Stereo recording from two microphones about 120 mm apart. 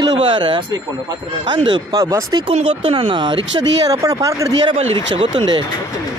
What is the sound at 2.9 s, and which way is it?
Speech, 45° right (ahead or behind).